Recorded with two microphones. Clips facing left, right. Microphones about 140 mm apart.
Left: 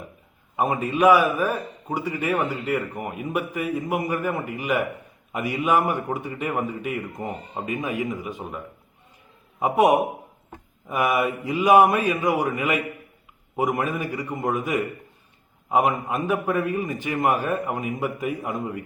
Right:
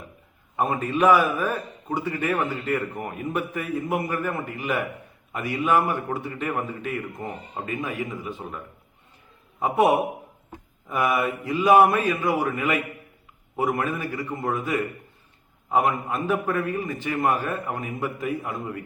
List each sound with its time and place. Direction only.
0.5 s a man's voice: 10° left (ahead or behind)